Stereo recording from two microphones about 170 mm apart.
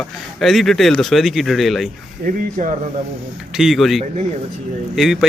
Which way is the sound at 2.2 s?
50° right (ahead or behind).